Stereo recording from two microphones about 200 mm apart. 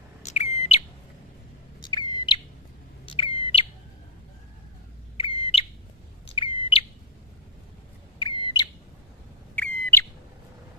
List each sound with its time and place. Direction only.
0.2 s bird: 35° left (ahead or behind)
1.8 s bird: 20° left (ahead or behind)
5.1 s bird: 25° left (ahead or behind)
8.2 s bird: 25° left (ahead or behind)
9.6 s bird: 5° left (ahead or behind)